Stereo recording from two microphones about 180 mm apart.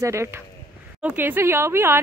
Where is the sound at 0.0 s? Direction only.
15° right (ahead or behind).